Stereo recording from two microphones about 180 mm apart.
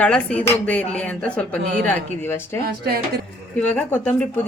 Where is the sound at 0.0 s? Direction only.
5° left (ahead or behind).